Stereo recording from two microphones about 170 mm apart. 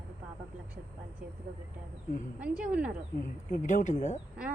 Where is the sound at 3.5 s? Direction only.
45° left (ahead or behind).